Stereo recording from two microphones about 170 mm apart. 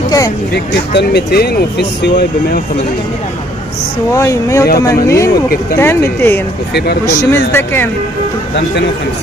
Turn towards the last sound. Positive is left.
turn(degrees=15)  # may be behind; listen again after turning